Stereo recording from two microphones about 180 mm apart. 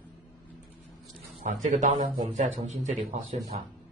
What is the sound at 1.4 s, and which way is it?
Speech, 45° right (ahead or behind).